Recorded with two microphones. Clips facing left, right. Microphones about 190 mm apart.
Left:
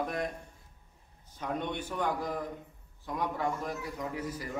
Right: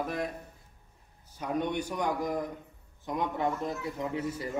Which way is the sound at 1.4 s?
10° right (ahead or behind).